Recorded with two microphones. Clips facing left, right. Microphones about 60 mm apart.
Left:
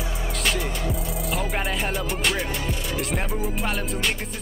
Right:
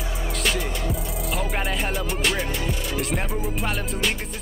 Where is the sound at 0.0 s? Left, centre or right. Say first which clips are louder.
Even; centre.